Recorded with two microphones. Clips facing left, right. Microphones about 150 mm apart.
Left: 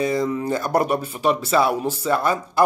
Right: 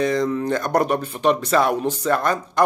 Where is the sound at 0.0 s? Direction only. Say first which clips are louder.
Right 1 dB; 5° left (ahead or behind).